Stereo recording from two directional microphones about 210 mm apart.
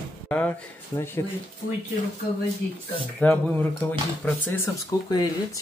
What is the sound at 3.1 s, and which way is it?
Speech, 10° left (ahead or behind).